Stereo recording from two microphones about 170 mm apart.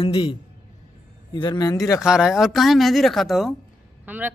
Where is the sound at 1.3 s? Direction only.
25° left (ahead or behind).